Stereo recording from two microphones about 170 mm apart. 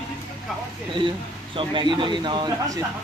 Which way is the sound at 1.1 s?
30° right (ahead or behind).